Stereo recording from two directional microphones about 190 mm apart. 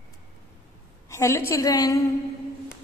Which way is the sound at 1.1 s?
15° left (ahead or behind).